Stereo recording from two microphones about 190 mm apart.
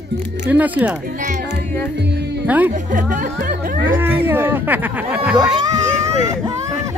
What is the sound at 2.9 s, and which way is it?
Speech, 45° right (ahead or behind).